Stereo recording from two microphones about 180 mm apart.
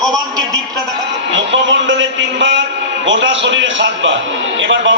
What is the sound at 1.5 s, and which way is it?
A man's voice, 90° right.